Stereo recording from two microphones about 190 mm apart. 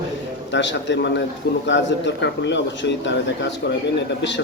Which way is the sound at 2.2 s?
65° left (ahead or behind).